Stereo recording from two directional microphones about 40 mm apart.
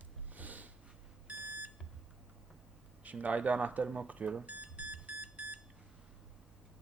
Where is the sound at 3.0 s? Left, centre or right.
Right.